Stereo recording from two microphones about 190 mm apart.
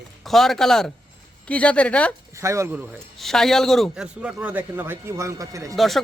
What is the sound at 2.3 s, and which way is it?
Speech, 15° right (ahead or behind).